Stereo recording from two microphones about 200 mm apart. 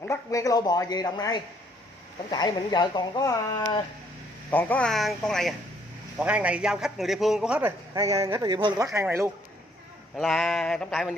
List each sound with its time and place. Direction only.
0.0 s speech: 15° left (ahead or behind)
4.5 s speech: 10° left (ahead or behind)
7.9 s speech: 15° right (ahead or behind)
10.1 s speech: centre (ahead or behind)